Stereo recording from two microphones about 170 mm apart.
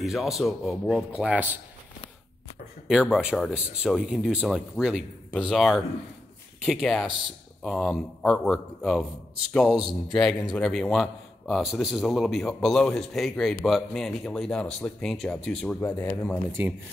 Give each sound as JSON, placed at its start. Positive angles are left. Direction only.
{"t": 0.0, "sound": "a man's voice", "side_deg": 0}
{"t": 2.9, "sound": "a man's voice", "side_deg": -5}
{"t": 15.8, "sound": "speech", "side_deg": 20}